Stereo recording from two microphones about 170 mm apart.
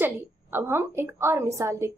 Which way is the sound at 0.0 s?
10° right (ahead or behind).